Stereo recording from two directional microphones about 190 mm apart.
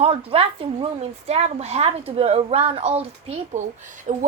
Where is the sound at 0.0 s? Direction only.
30° right (ahead or behind).